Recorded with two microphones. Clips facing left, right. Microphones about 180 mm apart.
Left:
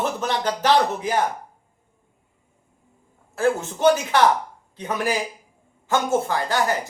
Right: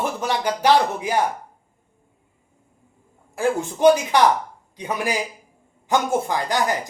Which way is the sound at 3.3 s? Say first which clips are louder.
Even; 15° right (ahead or behind).